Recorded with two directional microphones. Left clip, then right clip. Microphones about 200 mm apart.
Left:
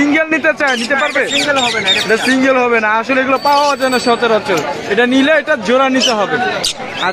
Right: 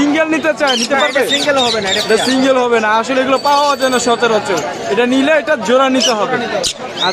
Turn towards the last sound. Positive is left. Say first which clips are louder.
# even
turn(degrees=5)  # may be behind; listen again after turning